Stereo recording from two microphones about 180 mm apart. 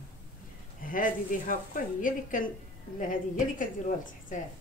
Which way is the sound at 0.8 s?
50° left (ahead or behind).